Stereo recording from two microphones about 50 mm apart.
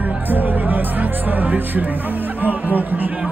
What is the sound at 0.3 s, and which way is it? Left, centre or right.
Music, right.